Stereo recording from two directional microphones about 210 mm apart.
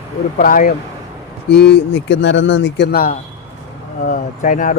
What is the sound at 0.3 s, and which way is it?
Speech, 40° left (ahead or behind).